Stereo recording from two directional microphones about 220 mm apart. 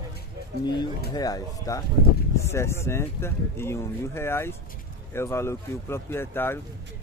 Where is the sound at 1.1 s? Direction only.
15° left (ahead or behind).